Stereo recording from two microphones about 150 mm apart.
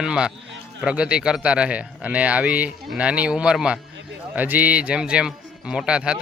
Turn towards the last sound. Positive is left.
turn(degrees=-5)  # may be behind; listen again after turning